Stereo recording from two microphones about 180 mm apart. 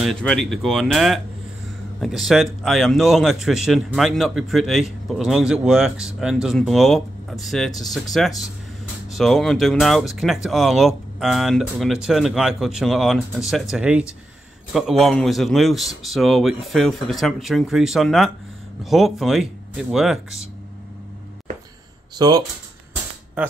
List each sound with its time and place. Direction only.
0.0 s a man's voice: 5° left (ahead or behind)
22.2 s speech: 20° right (ahead or behind)